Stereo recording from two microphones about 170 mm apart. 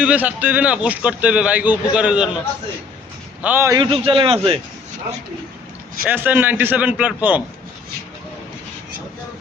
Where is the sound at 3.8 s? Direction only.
30° right (ahead or behind).